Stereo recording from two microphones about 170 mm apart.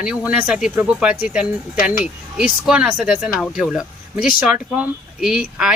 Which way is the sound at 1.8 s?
45° left (ahead or behind).